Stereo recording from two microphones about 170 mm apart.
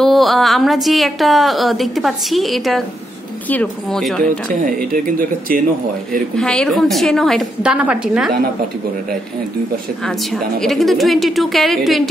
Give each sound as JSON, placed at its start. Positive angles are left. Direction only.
{"t": 0.0, "sound": "a woman's voice", "side_deg": 0}
{"t": 4.5, "sound": "speech", "side_deg": -55}
{"t": 6.3, "sound": "a woman's voice", "side_deg": 5}
{"t": 10.0, "sound": "a woman's voice", "side_deg": 0}